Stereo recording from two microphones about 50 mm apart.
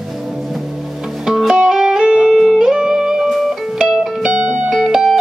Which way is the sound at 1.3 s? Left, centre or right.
Centre.